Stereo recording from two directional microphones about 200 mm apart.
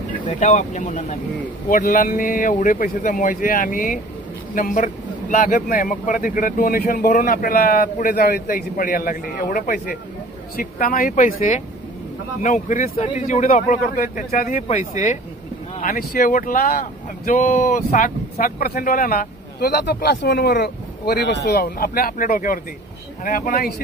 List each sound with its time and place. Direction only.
0.3 s speech: 40° left (ahead or behind)